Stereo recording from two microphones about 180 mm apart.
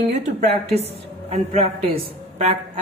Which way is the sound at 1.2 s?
35° right (ahead or behind).